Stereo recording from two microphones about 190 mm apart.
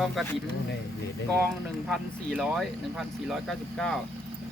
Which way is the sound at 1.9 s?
Centre (ahead or behind).